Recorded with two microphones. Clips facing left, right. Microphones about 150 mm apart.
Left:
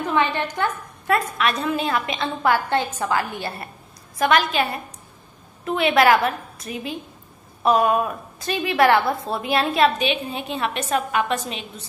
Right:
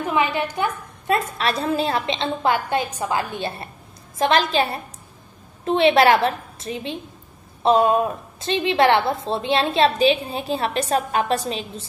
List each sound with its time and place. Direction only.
0.1 s a woman's voice: 10° right (ahead or behind)
1.0 s a woman's voice: 25° right (ahead or behind)
5.7 s a woman's voice: 30° right (ahead or behind)